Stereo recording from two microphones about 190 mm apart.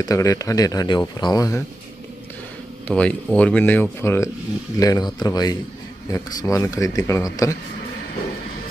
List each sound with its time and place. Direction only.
0.0 s speech: 15° left (ahead or behind)
2.9 s speech: 5° left (ahead or behind)